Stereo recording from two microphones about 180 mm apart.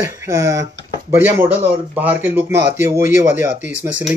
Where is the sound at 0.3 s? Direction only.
15° right (ahead or behind).